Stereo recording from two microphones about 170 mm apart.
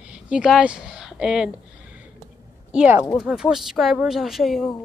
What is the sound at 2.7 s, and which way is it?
A woman's voice, 10° right (ahead or behind).